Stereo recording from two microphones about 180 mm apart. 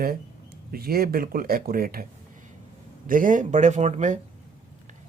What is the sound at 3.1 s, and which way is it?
Speech, 50° right (ahead or behind).